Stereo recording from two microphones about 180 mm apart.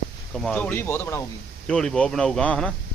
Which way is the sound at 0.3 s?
5° left (ahead or behind).